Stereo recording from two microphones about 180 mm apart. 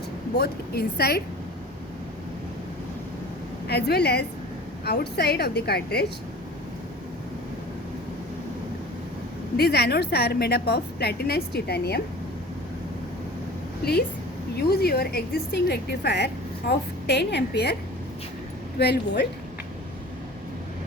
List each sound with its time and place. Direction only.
0.3 s a woman's voice: 60° left (ahead or behind)
3.7 s a woman's voice: 65° left (ahead or behind)
9.6 s a woman's voice: 65° left (ahead or behind)
13.8 s a woman's voice: 60° left (ahead or behind)
18.8 s a woman's voice: 65° left (ahead or behind)